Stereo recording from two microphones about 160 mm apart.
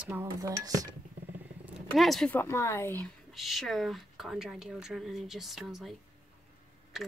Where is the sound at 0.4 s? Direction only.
20° right (ahead or behind).